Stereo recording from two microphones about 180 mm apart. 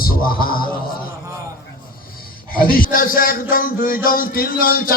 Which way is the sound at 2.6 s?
55° left (ahead or behind).